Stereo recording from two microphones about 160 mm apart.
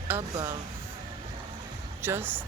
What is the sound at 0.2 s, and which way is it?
Speech, 25° right (ahead or behind).